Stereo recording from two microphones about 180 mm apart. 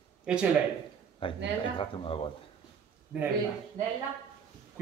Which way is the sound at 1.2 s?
30° left (ahead or behind).